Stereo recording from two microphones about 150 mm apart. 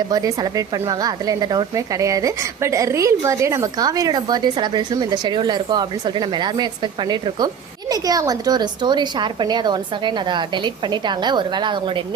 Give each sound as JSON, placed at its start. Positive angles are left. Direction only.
{"t": 0.1, "sound": "speech", "side_deg": -25}